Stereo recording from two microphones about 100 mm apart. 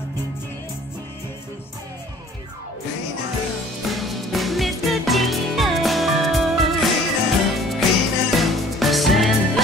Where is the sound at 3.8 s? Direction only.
Centre (ahead or behind).